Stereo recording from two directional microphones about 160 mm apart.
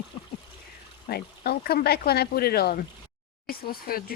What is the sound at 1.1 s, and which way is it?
Speech, 75° left (ahead or behind).